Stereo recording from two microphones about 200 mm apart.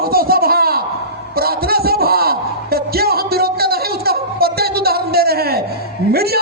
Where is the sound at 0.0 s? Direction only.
50° right (ahead or behind).